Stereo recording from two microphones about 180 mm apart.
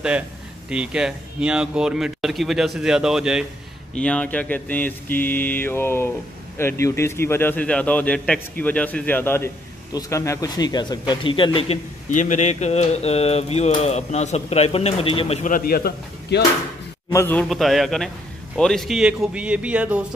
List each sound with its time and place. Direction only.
0.7 s a man's voice: 5° right (ahead or behind); by 16.4 s 60° left (ahead or behind)
17.1 s speech: 10° left (ahead or behind); by 20.1 s 5° right (ahead or behind)